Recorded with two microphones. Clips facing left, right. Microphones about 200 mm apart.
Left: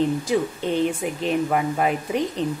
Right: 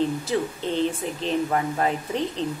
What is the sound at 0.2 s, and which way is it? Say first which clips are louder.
Speech: left 3 dB; 15° left (ahead or behind).